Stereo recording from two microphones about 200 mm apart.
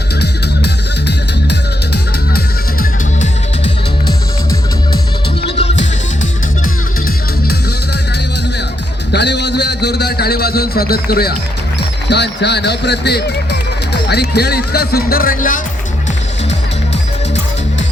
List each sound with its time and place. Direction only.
0.2 s music: 55° left (ahead or behind)
5.5 s music: 35° left (ahead or behind)
9.1 s a sound: 60° left (ahead or behind)
11.8 s speech: 55° left (ahead or behind); by 15.6 s 40° left (ahead or behind)